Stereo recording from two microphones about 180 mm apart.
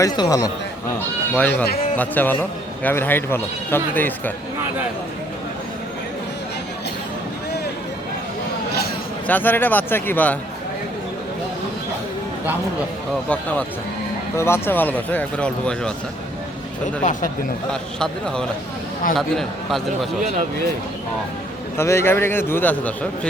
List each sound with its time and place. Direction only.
0.0 s a man's voice: 20° left (ahead or behind)
1.4 s speech: 10° left (ahead or behind)
9.2 s speech: 10° left (ahead or behind)
13.3 s speech: 5° left (ahead or behind)
17.0 s speech: 45° left (ahead or behind)
17.7 s speech: 5° left (ahead or behind)
21.8 s speech: 15° left (ahead or behind)